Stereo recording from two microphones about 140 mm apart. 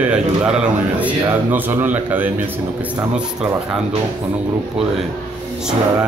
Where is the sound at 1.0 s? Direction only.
15° right (ahead or behind).